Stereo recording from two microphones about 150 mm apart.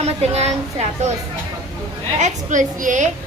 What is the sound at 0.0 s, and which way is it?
A woman's voice, 45° right (ahead or behind).